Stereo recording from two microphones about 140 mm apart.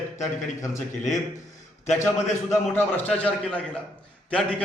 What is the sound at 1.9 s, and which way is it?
A man's voice, 20° left (ahead or behind).